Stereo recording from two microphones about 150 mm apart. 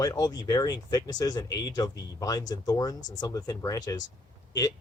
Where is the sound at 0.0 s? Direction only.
25° left (ahead or behind).